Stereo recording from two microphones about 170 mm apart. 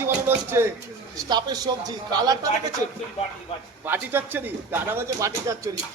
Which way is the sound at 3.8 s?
10° right (ahead or behind).